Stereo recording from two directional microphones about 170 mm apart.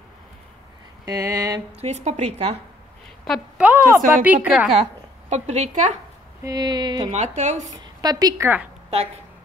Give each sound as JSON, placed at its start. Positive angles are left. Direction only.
{"t": 1.0, "sound": "a sound", "side_deg": -20}
{"t": 1.8, "sound": "a woman's voice", "side_deg": -40}
{"t": 3.3, "sound": "a woman's voice", "side_deg": -5}
{"t": 5.3, "sound": "a woman's voice", "side_deg": -45}
{"t": 6.4, "sound": "speech", "side_deg": -25}
{"t": 7.1, "sound": "a woman's voice", "side_deg": -45}
{"t": 7.7, "sound": "a woman's voice", "side_deg": -25}